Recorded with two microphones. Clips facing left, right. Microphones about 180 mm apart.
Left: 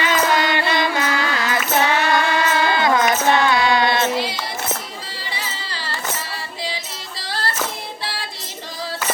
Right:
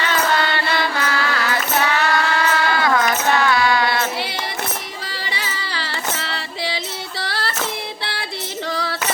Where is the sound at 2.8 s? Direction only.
20° left (ahead or behind).